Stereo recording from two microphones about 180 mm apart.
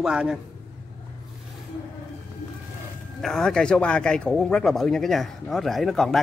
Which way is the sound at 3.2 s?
Centre (ahead or behind).